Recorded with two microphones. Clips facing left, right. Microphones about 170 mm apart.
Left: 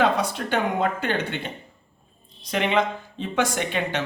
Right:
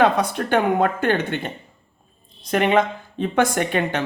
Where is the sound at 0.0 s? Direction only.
55° right (ahead or behind).